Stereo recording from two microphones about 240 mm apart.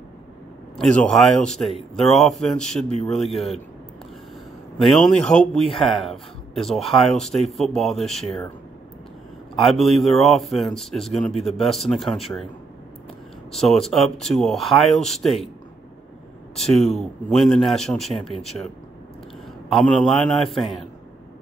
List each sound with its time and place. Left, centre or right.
0.7 s a man's voice: centre
4.8 s a man's voice: centre
9.7 s a man's voice: centre
13.5 s a man's voice: centre
16.5 s a man's voice: centre
19.7 s a man's voice: centre